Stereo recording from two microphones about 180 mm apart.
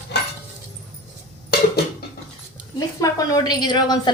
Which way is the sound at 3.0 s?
20° left (ahead or behind).